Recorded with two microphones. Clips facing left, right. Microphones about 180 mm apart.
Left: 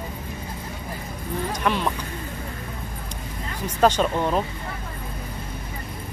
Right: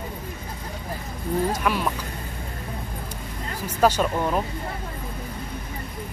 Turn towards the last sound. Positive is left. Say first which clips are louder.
# left 1 dB
turn(degrees=-5)  # may be behind; listen again after turning